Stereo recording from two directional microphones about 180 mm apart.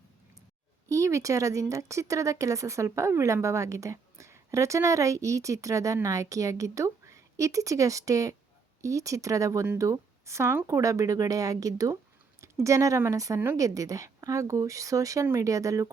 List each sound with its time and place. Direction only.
0.9 s speech: 15° right (ahead or behind)